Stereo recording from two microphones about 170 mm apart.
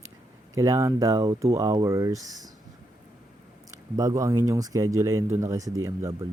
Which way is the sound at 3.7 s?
20° right (ahead or behind).